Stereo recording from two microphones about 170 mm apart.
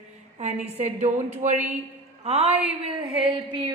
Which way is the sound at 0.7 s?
40° right (ahead or behind).